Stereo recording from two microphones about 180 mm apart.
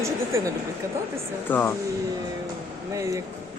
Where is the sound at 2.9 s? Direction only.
15° right (ahead or behind).